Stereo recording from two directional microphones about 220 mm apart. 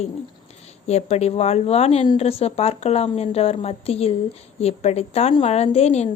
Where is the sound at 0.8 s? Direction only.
30° left (ahead or behind).